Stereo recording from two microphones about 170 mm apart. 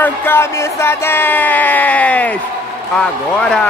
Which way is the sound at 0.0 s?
10° left (ahead or behind).